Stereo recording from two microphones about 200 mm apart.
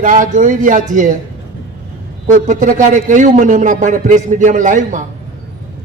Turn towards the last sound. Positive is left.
turn(degrees=-40)  # may be behind; listen again after turning